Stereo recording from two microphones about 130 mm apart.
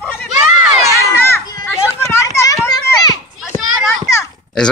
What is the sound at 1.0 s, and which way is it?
Children playing, 20° left (ahead or behind).